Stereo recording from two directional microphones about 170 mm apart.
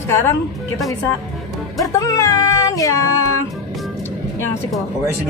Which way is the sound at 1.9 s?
20° left (ahead or behind).